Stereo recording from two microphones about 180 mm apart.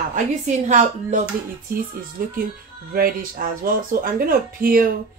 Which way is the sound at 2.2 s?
55° right (ahead or behind).